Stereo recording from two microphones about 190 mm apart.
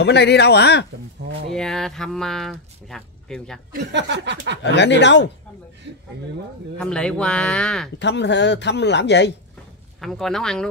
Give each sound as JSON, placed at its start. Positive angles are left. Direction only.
{"t": 0.0, "sound": "speech", "side_deg": 60}
{"t": 1.5, "sound": "speech", "side_deg": 0}
{"t": 3.9, "sound": "a sound", "side_deg": -65}
{"t": 4.7, "sound": "speech", "side_deg": 65}
{"t": 6.8, "sound": "speech", "side_deg": 5}
{"t": 8.0, "sound": "speech", "side_deg": 65}
{"t": 9.9, "sound": "speech", "side_deg": 0}